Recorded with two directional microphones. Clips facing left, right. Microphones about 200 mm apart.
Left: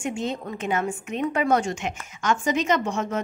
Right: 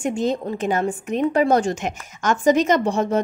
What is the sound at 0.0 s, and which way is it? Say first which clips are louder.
A woman's voice: right 6 dB; 35° right (ahead or behind).